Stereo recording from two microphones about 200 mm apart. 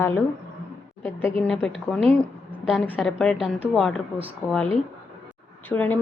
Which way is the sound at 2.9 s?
Centre (ahead or behind).